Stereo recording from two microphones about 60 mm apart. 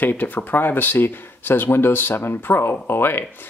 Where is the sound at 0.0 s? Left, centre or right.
Left.